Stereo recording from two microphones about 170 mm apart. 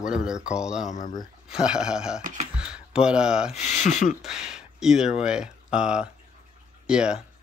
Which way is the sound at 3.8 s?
45° left (ahead or behind).